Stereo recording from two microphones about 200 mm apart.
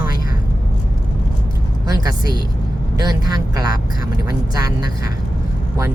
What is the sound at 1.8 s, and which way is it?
Speech, 20° right (ahead or behind).